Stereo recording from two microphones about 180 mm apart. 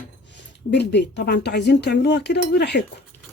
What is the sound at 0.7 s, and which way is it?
Speech, 70° left (ahead or behind).